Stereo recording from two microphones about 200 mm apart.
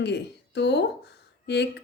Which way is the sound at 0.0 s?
60° left (ahead or behind).